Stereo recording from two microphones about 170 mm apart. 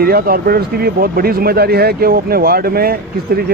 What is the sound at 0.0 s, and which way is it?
Speech, 60° right (ahead or behind).